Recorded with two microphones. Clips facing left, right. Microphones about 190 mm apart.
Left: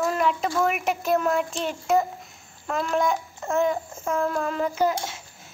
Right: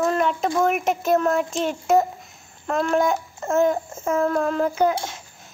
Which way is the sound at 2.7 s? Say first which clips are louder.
Right 4 dB; centre (ahead or behind).